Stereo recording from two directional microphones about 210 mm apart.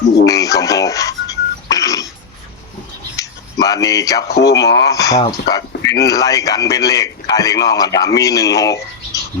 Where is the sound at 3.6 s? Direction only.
15° left (ahead or behind).